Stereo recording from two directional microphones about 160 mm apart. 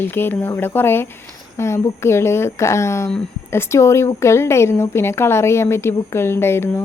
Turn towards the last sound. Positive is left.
turn(degrees=15)  # may be behind; listen again after turning